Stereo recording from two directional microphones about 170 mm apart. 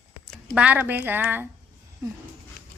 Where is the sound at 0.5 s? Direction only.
10° right (ahead or behind).